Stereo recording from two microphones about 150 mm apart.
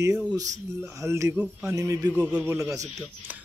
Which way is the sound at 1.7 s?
20° right (ahead or behind).